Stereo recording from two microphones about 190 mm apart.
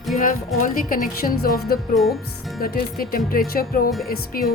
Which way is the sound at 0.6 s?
45° left (ahead or behind).